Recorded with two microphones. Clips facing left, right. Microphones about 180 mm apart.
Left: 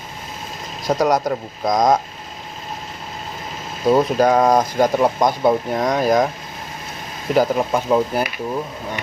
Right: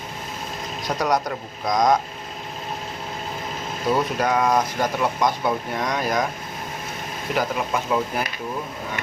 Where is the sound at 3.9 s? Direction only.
40° left (ahead or behind).